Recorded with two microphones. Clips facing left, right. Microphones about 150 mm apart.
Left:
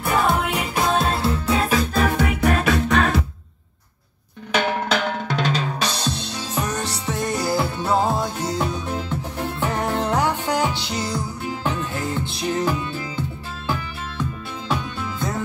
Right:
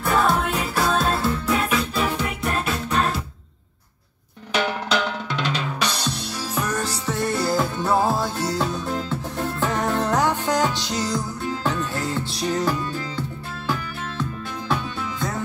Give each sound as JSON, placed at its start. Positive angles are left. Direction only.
{"t": 0.0, "sound": "music", "side_deg": 10}
{"t": 4.8, "sound": "drum", "side_deg": 45}
{"t": 11.0, "sound": "music", "side_deg": 15}